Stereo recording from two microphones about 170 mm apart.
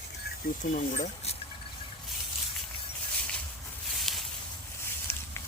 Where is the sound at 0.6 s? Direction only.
45° left (ahead or behind).